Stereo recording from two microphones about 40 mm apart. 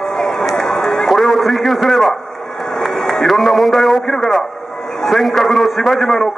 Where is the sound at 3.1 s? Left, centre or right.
Centre.